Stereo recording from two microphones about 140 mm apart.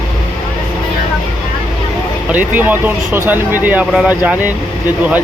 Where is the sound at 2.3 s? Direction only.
10° right (ahead or behind).